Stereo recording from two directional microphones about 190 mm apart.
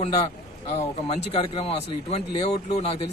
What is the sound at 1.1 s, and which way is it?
Speech, 30° left (ahead or behind).